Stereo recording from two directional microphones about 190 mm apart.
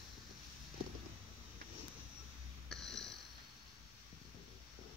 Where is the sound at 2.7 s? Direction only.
Centre (ahead or behind).